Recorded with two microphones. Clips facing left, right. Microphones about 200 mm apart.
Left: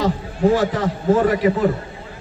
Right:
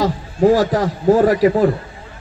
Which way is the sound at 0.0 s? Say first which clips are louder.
Right 3 dB; 40° right (ahead or behind).